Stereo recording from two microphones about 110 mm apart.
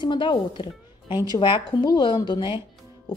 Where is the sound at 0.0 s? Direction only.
45° left (ahead or behind).